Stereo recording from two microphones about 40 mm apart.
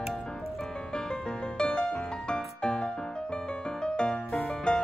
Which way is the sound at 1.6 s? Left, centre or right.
Left.